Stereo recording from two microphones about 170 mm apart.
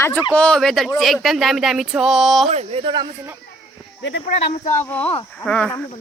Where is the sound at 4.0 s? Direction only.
90° left.